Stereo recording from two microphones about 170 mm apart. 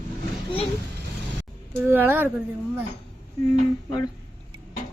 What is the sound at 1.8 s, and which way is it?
Speech, 10° right (ahead or behind).